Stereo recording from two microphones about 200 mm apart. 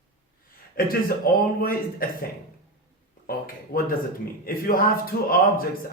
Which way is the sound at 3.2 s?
45° left (ahead or behind).